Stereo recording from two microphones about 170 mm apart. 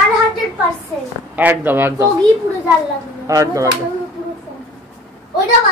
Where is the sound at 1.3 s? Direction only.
10° right (ahead or behind).